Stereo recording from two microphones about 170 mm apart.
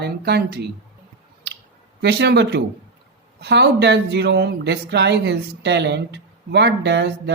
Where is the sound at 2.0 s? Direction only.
80° right.